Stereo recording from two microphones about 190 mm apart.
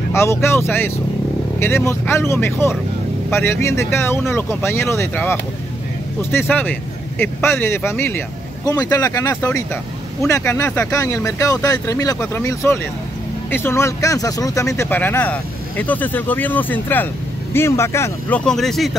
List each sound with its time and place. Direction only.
0.1 s speech: 15° left (ahead or behind)